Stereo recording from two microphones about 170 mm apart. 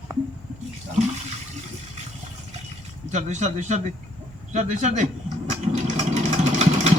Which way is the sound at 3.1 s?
45° right (ahead or behind).